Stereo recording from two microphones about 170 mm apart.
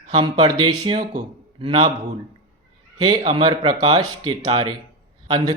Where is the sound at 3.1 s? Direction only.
25° right (ahead or behind).